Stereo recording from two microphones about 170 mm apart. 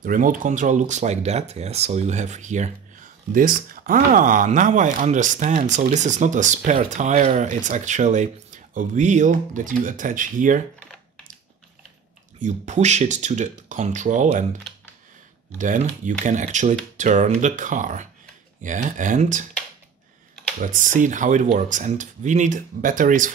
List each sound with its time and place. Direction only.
0.0 s speech: 55° right (ahead or behind)
12.4 s speech: 45° right (ahead or behind)
15.5 s speech: 50° right (ahead or behind)
20.6 s speech: 50° right (ahead or behind)